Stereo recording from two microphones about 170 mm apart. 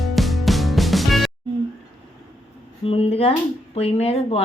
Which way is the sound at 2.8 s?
35° left (ahead or behind).